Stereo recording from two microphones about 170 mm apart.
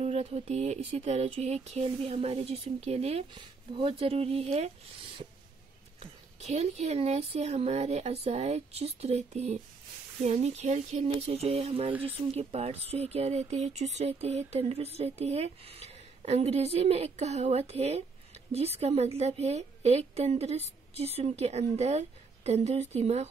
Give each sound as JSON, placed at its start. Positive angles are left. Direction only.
{"t": 0.0, "sound": "speech", "side_deg": -40}
{"t": 5.9, "sound": "speech", "side_deg": -40}